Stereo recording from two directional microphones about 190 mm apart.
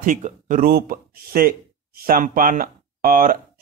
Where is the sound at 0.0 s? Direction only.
45° right (ahead or behind).